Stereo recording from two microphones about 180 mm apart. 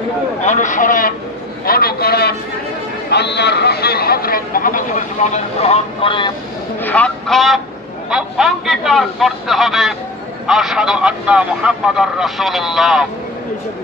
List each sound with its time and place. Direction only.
0.4 s a man's voice: 45° left (ahead or behind)
6.8 s a man's voice: 10° left (ahead or behind)